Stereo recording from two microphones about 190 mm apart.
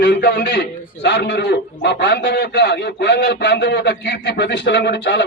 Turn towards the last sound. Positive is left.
turn(degrees=65)  # may be behind; listen again after turning